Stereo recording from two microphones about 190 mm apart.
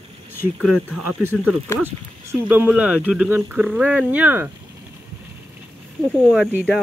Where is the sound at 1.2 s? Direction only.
10° right (ahead or behind).